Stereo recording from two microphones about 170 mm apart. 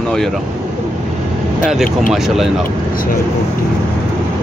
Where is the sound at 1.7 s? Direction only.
Centre (ahead or behind).